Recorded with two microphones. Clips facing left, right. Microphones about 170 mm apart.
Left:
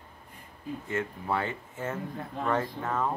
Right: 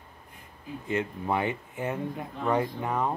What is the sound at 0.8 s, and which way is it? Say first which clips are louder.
Speech: right 4 dB; 20° right (ahead or behind).